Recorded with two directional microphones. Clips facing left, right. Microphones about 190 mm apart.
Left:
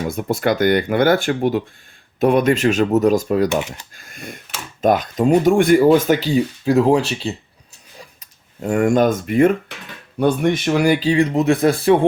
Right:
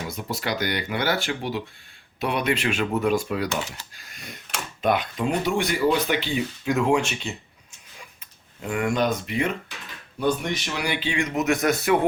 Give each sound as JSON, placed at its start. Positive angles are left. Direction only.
{"t": 0.0, "sound": "speech", "side_deg": 50}